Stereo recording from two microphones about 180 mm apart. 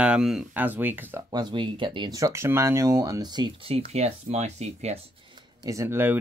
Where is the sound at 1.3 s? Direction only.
25° right (ahead or behind).